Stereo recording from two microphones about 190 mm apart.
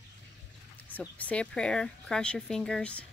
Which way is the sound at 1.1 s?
5° left (ahead or behind).